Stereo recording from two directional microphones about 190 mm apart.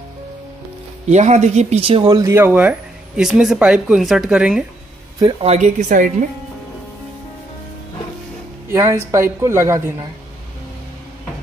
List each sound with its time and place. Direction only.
1.1 s speech: 35° right (ahead or behind); by 4.6 s 5° right (ahead or behind)
5.2 s a woman's voice: 35° right (ahead or behind)
8.6 s speech: 15° right (ahead or behind)